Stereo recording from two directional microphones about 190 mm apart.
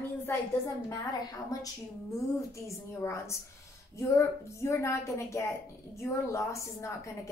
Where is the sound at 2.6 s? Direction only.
15° left (ahead or behind).